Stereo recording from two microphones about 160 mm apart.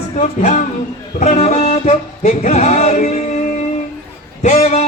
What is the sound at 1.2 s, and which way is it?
Music, 45° left (ahead or behind).